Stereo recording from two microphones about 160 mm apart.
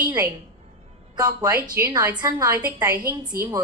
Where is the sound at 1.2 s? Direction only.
25° right (ahead or behind).